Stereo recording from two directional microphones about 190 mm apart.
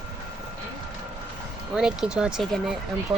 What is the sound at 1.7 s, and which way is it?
Speech, 5° right (ahead or behind).